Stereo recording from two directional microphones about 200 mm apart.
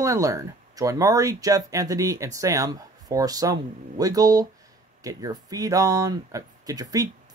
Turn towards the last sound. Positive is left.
turn(degrees=-20)  # may be behind; listen again after turning